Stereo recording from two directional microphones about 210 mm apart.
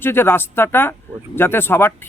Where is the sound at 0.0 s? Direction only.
10° left (ahead or behind).